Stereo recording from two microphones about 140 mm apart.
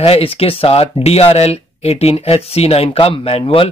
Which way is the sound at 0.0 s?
40° left (ahead or behind).